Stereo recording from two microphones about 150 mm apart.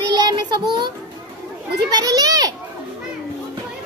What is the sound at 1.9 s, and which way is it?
Speech, 25° right (ahead or behind).